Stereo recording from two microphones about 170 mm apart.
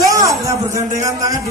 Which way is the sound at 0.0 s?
20° right (ahead or behind).